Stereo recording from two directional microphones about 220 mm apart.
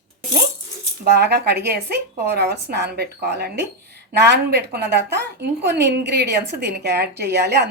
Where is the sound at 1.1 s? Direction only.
45° right (ahead or behind).